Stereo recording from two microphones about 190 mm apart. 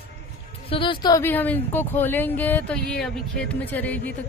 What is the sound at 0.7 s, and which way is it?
Speech, 25° left (ahead or behind).